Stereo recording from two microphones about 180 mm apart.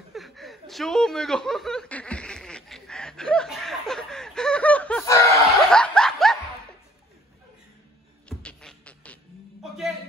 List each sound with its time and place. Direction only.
0.1 s chuckle: centre (ahead or behind)
5.0 s snicker: 15° left (ahead or behind)
5.7 s snicker: 5° left (ahead or behind)
8.3 s music: 5° left (ahead or behind)